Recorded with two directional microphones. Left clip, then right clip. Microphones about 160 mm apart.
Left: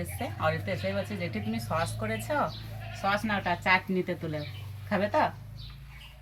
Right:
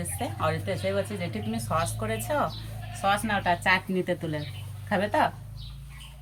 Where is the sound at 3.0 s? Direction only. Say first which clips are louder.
Right 3 dB; 20° right (ahead or behind).